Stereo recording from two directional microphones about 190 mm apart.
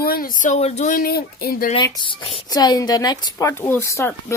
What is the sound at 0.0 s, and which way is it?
Speech, 50° left (ahead or behind).